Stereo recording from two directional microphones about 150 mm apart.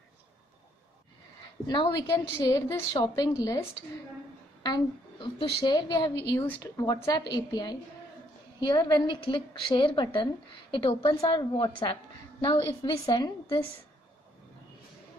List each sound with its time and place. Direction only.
1.7 s a woman's voice: 30° left (ahead or behind)
4.6 s a woman's voice: 30° left (ahead or behind)